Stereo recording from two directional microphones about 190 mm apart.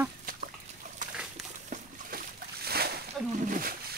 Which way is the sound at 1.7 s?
50° right (ahead or behind).